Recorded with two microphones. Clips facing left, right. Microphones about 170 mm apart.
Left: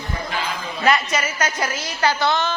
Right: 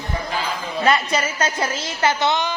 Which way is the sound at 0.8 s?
30° right (ahead or behind).